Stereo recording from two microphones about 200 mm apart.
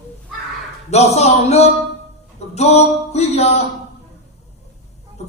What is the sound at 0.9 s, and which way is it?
A man's voice, 35° left (ahead or behind).